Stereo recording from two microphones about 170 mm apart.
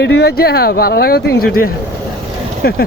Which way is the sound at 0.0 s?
80° left.